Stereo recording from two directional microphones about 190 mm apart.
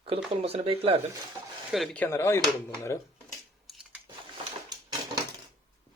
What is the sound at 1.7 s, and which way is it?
Speech, 5° left (ahead or behind).